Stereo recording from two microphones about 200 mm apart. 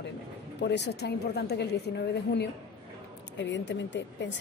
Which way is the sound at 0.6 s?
60° left (ahead or behind).